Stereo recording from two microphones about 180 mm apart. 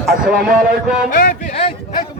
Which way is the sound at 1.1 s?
50° left (ahead or behind).